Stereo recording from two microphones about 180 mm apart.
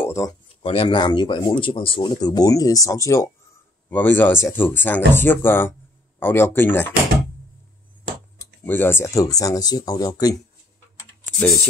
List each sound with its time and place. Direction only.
0.0 s a sound: 15° left (ahead or behind)
0.6 s speech: 30° left (ahead or behind); by 6.9 s 10° left (ahead or behind)
8.6 s speech: 10° left (ahead or behind)